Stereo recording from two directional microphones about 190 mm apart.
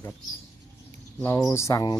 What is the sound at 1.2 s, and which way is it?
Speech, 15° left (ahead or behind).